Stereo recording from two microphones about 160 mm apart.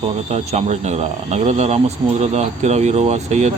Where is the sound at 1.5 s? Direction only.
45° right (ahead or behind).